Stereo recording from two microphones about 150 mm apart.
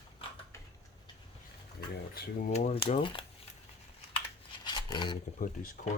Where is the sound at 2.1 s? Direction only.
75° left (ahead or behind); by 3.2 s 35° left (ahead or behind).